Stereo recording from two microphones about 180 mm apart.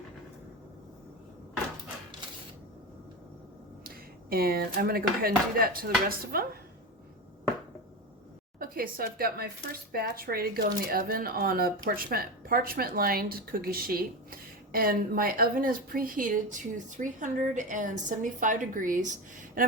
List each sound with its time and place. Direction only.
3.8 s speech: 55° right (ahead or behind)
8.5 s speech: 55° right (ahead or behind)